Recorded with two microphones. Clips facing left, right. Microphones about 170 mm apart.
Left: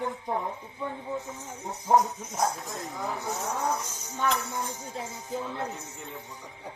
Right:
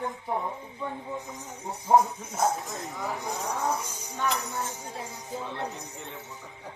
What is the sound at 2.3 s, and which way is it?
Speech, centre (ahead or behind).